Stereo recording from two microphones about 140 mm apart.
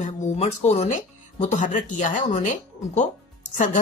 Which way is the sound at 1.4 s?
60° left (ahead or behind).